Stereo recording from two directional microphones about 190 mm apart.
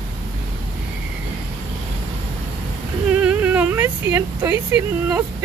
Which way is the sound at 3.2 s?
5° right (ahead or behind).